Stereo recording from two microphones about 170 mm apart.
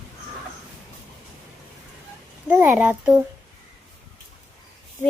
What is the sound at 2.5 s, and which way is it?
Speech, 10° right (ahead or behind).